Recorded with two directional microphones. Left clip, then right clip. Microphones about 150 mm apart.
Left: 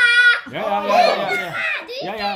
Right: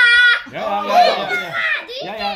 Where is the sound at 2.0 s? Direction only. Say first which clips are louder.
Even; 30° left (ahead or behind).